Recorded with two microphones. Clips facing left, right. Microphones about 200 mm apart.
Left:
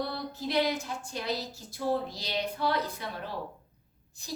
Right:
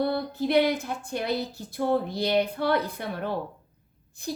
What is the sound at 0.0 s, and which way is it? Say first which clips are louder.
A woman's voice: right 8 dB; 60° right (ahead or behind).